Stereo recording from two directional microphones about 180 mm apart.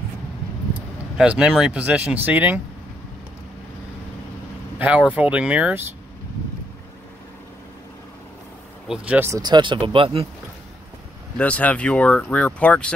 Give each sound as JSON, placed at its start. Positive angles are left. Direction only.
{"t": 1.1, "sound": "speech", "side_deg": -5}
{"t": 4.7, "sound": "speech", "side_deg": -10}
{"t": 8.8, "sound": "speech", "side_deg": -5}
{"t": 9.4, "sound": "speech", "side_deg": -25}
{"t": 11.3, "sound": "speech", "side_deg": 5}